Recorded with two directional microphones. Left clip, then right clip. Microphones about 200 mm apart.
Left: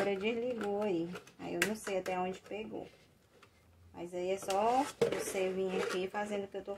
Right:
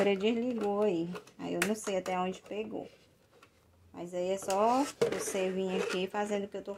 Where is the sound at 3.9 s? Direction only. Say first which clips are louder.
Right 3 dB; 40° right (ahead or behind).